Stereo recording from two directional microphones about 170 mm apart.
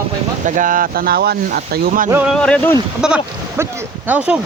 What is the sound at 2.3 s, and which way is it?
Speech, 5° left (ahead or behind).